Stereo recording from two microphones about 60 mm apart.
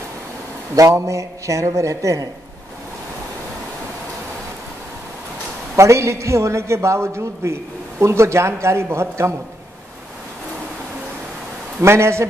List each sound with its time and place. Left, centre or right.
1.0 s a man's voice: right
5.8 s a man's voice: right
11.8 s a man's voice: right